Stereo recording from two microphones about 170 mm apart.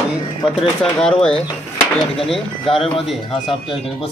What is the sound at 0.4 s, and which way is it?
Speech, centre (ahead or behind).